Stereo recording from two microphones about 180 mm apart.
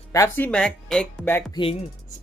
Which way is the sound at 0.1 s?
15° left (ahead or behind).